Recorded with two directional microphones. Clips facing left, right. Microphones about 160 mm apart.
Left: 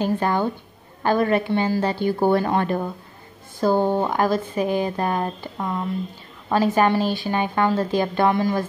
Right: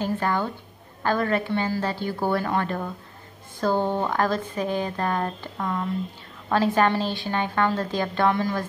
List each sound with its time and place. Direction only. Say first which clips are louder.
0.0 s speech: left 4 dB; 15° left (ahead or behind)